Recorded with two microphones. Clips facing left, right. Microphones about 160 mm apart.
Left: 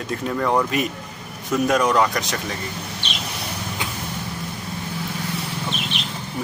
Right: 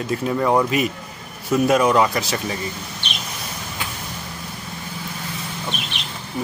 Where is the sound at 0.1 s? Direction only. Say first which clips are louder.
Right 2 dB; 10° right (ahead or behind).